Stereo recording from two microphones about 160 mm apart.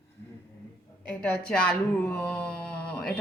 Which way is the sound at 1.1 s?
5° left (ahead or behind).